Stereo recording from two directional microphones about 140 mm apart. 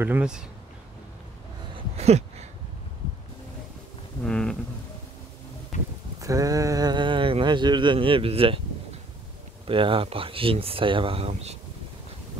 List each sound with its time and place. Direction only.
0.0 s speech: 10° right (ahead or behind)
2.0 s a sound: 50° right (ahead or behind)
4.2 s a sound: 5° left (ahead or behind)
5.7 s speech: 60° left (ahead or behind)
6.2 s speech: 25° right (ahead or behind); by 8.5 s 40° right (ahead or behind)
9.7 s speech: 40° right (ahead or behind)